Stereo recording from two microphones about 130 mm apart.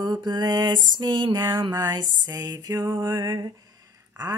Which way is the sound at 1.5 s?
35° right (ahead or behind).